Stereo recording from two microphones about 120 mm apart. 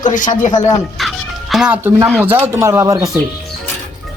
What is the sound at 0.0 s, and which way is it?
Speech, 90° left.